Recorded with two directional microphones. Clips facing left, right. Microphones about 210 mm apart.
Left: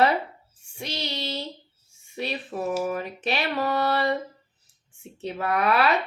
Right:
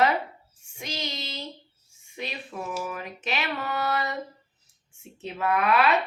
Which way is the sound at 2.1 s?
35° left (ahead or behind).